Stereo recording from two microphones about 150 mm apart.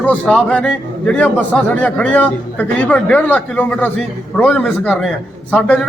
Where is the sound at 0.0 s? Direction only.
5° left (ahead or behind).